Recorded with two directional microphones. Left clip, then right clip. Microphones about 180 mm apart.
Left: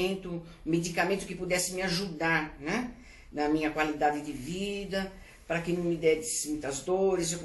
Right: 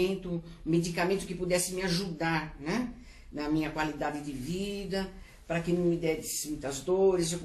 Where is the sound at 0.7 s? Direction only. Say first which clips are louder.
Left 1 dB; 25° right (ahead or behind).